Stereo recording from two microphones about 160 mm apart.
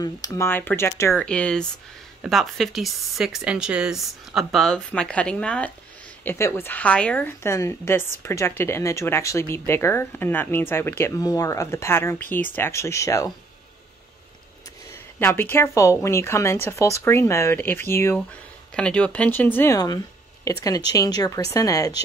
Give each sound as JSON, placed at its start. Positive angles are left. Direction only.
{"t": 0.0, "sound": "a woman's voice", "side_deg": 20}
{"t": 15.1, "sound": "speech", "side_deg": 15}